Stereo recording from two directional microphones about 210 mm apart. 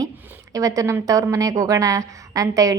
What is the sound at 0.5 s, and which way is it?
A woman's voice, 15° right (ahead or behind).